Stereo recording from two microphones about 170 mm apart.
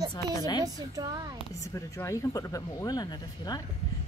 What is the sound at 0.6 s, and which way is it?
Speech, 20° right (ahead or behind).